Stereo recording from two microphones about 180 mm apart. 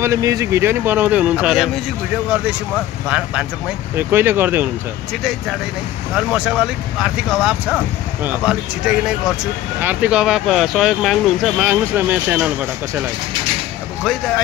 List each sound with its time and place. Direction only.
0.0 s speech: 15° right (ahead or behind)
6.1 s speech: 5° right (ahead or behind)